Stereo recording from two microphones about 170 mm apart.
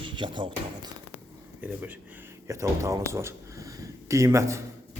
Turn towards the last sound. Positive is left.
turn(degrees=-15)  # may be behind; listen again after turning